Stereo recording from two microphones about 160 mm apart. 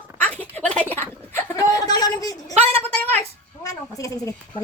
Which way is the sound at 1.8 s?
25° left (ahead or behind).